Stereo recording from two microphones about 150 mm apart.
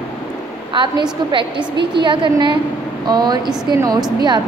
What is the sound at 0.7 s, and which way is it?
A woman's voice, 30° right (ahead or behind).